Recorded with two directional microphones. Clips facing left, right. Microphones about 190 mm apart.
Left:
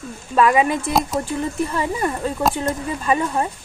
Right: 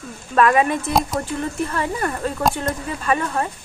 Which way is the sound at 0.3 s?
15° left (ahead or behind).